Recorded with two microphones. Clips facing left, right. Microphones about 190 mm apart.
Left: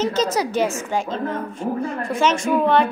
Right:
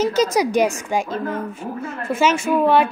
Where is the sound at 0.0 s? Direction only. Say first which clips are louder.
Right 3 dB; 10° right (ahead or behind).